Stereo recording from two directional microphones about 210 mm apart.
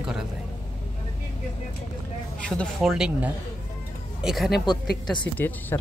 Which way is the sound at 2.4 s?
Centre (ahead or behind).